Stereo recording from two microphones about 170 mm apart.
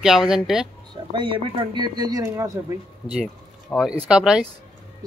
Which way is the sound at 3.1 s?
Centre (ahead or behind).